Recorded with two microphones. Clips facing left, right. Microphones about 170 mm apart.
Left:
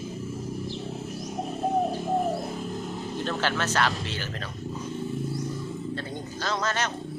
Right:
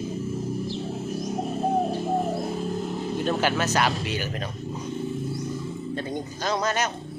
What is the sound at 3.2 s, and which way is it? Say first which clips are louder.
Speech: right 4 dB; 15° right (ahead or behind).